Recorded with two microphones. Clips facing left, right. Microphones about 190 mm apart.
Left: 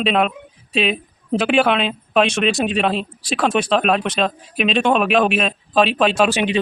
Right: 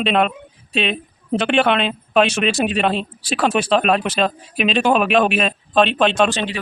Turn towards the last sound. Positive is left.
turn(degrees=20)  # may be behind; listen again after turning